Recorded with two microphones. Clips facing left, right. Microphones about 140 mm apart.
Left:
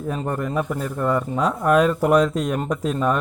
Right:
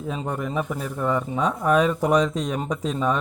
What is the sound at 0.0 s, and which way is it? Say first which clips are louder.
Speech: left 3 dB; centre (ahead or behind).